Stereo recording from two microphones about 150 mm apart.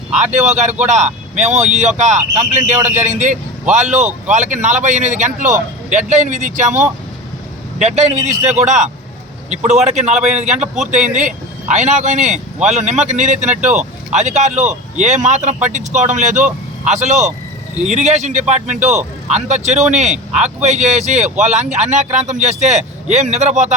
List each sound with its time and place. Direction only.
0.1 s speech: 50° right (ahead or behind)
2.7 s a man's voice: 15° right (ahead or behind)
3.2 s speech: 50° right (ahead or behind)